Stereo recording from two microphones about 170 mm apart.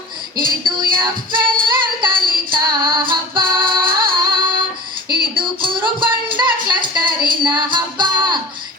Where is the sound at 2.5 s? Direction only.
30° right (ahead or behind).